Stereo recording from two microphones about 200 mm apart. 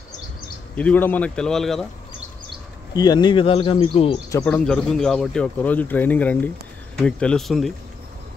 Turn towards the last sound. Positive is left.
turn(degrees=0)  # may be behind; listen again after turning